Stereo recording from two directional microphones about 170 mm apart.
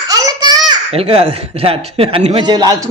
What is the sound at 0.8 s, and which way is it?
A man's voice, 35° right (ahead or behind).